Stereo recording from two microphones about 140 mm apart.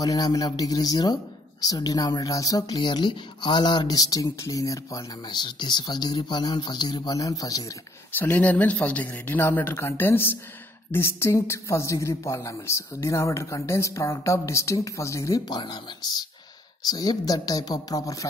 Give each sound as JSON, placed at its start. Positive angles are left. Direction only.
{"t": 0.0, "sound": "speech", "side_deg": 25}
{"t": 8.2, "sound": "speech", "side_deg": 10}